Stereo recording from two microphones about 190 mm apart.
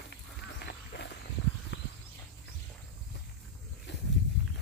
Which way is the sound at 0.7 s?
65° left (ahead or behind).